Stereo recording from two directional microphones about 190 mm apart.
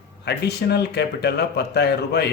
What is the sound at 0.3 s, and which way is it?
Speech, 60° left (ahead or behind).